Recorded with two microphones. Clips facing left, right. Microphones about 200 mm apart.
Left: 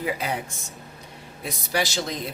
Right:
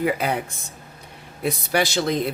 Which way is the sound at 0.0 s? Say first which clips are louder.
Right 5 dB; 60° right (ahead or behind).